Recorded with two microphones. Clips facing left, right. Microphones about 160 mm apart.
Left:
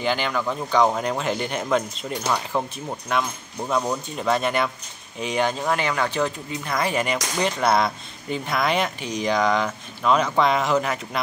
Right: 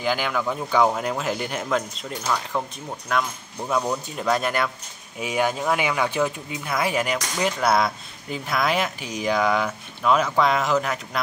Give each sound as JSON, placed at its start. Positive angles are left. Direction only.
{"t": 0.0, "sound": "speech", "side_deg": -5}
{"t": 2.2, "sound": "speech", "side_deg": 15}
{"t": 3.1, "sound": "speech", "side_deg": 0}